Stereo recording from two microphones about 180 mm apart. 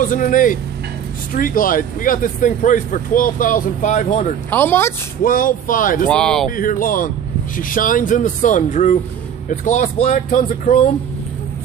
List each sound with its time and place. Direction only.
0.0 s speech: 50° left (ahead or behind)
4.5 s speech: 10° left (ahead or behind)
5.2 s speech: 50° left (ahead or behind)
6.0 s speech: 5° left (ahead or behind)
6.5 s speech: 50° left (ahead or behind)